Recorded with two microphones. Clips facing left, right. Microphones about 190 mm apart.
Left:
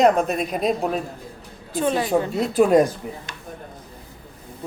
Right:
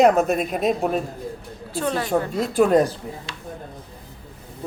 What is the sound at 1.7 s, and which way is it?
Speech, 20° left (ahead or behind).